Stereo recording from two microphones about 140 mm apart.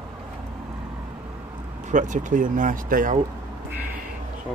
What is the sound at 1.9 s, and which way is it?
Speech, 65° right (ahead or behind).